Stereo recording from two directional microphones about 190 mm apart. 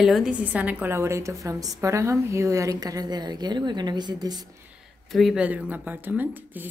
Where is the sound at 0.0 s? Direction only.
Centre (ahead or behind); by 4.5 s 20° right (ahead or behind).